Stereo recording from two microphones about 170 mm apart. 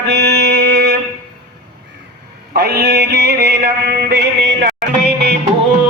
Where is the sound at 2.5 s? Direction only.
65° right (ahead or behind).